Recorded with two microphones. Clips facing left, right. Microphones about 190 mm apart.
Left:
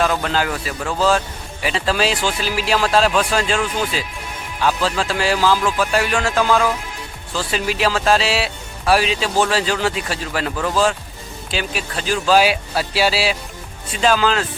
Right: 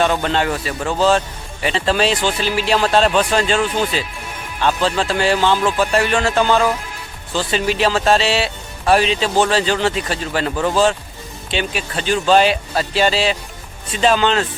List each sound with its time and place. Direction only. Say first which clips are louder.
0.0 s speech: right 2 dB; centre (ahead or behind)
5.6 s music: right 2 dB; 25° right (ahead or behind)
5.9 s speech: right 2 dB; centre (ahead or behind)
10.5 s music: right 3 dB; 25° right (ahead or behind)
11.5 s speech: right 2 dB; centre (ahead or behind)